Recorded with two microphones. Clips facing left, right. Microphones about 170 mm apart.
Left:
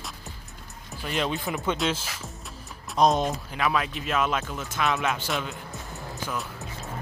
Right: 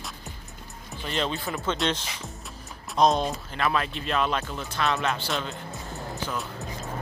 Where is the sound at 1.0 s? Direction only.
10° left (ahead or behind).